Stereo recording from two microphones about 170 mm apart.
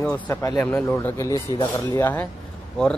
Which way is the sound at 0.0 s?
10° left (ahead or behind).